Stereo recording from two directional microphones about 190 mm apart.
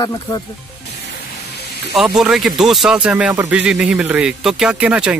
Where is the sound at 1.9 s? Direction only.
Centre (ahead or behind).